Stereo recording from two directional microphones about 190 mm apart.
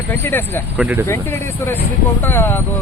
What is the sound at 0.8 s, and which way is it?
Speech, 10° right (ahead or behind).